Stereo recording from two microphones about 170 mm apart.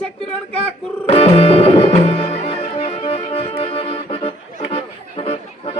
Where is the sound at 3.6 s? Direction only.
35° left (ahead or behind).